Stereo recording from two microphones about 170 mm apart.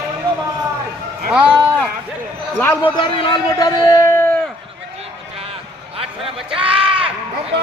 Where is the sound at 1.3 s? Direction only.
5° right (ahead or behind).